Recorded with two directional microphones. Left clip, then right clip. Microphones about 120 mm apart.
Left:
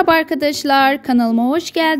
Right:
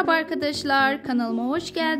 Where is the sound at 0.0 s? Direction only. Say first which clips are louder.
Left 8 dB; 70° left (ahead or behind).